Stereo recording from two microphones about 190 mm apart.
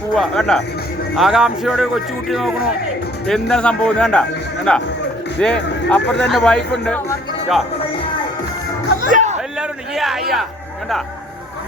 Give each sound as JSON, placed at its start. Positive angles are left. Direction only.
{"t": 0.2, "sound": "speech", "side_deg": 0}
{"t": 9.0, "sound": "music", "side_deg": -45}
{"t": 9.6, "sound": "a sound", "side_deg": 0}